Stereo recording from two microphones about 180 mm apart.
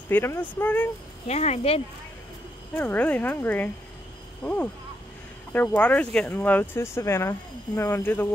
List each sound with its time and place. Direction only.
0.1 s speech: 10° left (ahead or behind)
1.2 s speech: 35° left (ahead or behind)
2.7 s speech: 10° left (ahead or behind)